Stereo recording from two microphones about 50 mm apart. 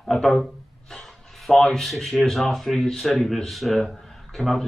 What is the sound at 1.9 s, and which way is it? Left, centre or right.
Speech, centre.